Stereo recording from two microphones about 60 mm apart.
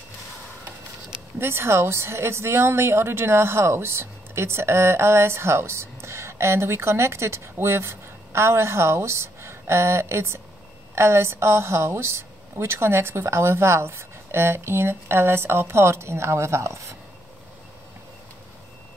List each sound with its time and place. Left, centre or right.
1.4 s speech: right